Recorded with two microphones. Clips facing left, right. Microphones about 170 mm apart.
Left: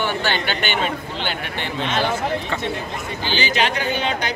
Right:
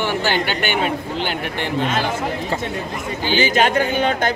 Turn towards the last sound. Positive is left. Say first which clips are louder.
# right 5 dB
turn(degrees=-50)  # may be behind; listen again after turning